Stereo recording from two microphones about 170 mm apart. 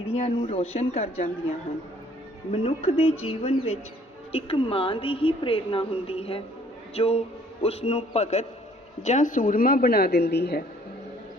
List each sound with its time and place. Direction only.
0.0 s a woman's voice: 35° left (ahead or behind)
2.5 s a woman's voice: 35° left (ahead or behind); by 10.7 s 70° left (ahead or behind)